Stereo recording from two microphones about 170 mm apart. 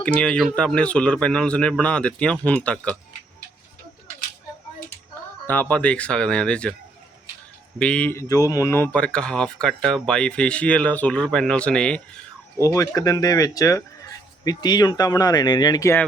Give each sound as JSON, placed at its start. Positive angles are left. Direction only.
{"t": 0.0, "sound": "speech", "side_deg": 5}
{"t": 5.5, "sound": "speech", "side_deg": 10}
{"t": 7.8, "sound": "speech", "side_deg": 5}
{"t": 12.5, "sound": "speech", "side_deg": 20}